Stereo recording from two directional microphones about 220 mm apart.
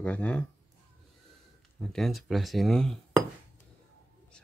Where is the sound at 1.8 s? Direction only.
Centre (ahead or behind).